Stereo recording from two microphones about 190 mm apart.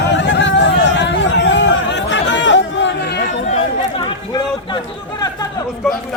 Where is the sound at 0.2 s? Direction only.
75° left (ahead or behind).